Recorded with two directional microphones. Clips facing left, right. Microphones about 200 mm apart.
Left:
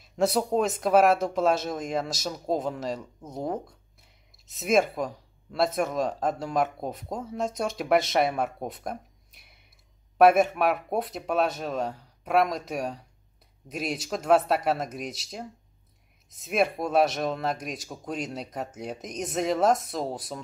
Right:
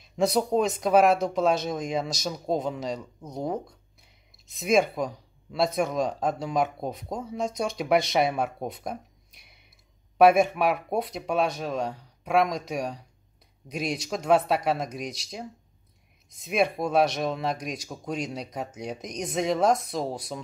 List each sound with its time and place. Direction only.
0.2 s speech: 5° left (ahead or behind)
10.1 s speech: centre (ahead or behind)